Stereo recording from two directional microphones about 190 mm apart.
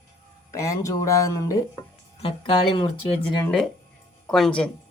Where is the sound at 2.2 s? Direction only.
30° left (ahead or behind).